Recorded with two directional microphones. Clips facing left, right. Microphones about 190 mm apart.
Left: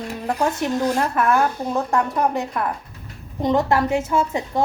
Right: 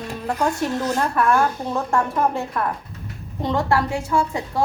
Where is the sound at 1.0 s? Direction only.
20° left (ahead or behind).